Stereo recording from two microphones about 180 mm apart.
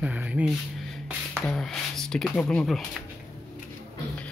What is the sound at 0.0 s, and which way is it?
Speech, 10° right (ahead or behind).